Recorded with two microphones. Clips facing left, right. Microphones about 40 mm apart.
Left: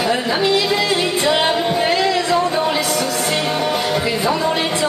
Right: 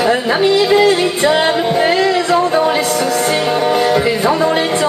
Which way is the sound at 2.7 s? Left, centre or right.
Right.